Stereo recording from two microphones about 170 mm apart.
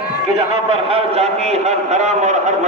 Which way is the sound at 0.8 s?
35° right (ahead or behind).